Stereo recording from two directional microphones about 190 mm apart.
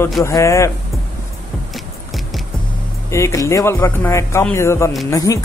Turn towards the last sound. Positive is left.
turn(degrees=15)  # may be behind; listen again after turning